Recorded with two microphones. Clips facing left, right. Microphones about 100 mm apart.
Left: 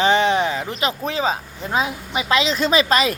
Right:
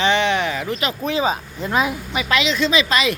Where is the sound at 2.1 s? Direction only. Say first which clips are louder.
Left 1 dB; 25° left (ahead or behind).